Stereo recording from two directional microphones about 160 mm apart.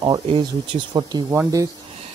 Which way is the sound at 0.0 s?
30° right (ahead or behind).